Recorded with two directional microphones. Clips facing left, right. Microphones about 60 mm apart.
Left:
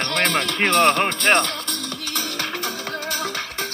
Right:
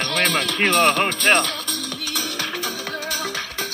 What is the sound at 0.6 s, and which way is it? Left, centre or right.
Speech, centre.